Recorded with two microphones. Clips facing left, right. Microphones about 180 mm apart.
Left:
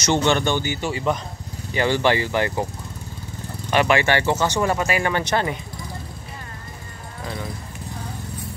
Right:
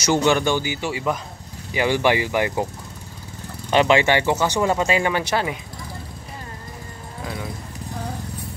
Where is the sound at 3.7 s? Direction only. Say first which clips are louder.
Right 2 dB; 20° right (ahead or behind).